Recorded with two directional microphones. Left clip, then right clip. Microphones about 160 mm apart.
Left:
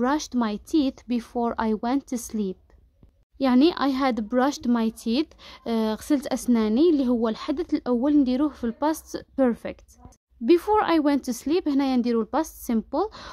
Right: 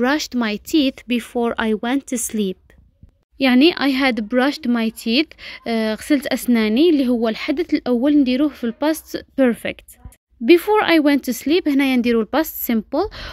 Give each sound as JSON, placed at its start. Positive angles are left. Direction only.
{"t": 0.0, "sound": "a woman's voice", "side_deg": -10}